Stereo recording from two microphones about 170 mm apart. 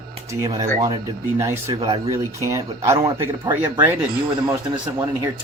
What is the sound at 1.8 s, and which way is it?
Speech, 25° right (ahead or behind).